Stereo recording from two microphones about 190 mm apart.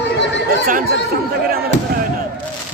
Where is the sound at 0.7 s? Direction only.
45° right (ahead or behind).